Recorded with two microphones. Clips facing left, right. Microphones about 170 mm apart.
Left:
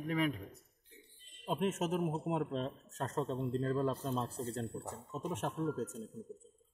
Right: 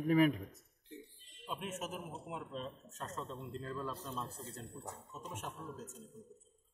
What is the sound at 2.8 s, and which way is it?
A man's voice, 35° left (ahead or behind).